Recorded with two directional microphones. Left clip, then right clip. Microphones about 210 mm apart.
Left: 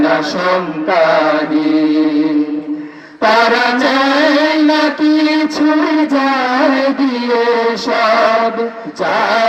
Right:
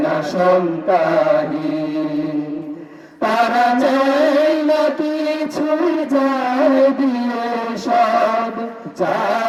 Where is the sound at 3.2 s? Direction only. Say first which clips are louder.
Left 4 dB; 60° right (ahead or behind).